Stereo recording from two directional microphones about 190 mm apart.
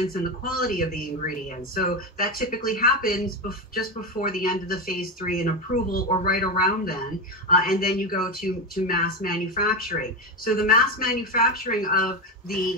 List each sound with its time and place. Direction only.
0.1 s speech: 50° left (ahead or behind)